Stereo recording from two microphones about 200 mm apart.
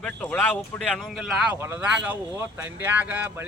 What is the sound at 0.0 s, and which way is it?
A man's voice, 5° left (ahead or behind).